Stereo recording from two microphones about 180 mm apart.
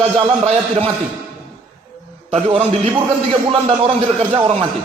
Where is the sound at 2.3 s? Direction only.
35° right (ahead or behind).